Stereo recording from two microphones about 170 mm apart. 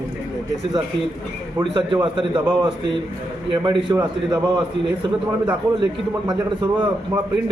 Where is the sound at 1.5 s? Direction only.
25° right (ahead or behind).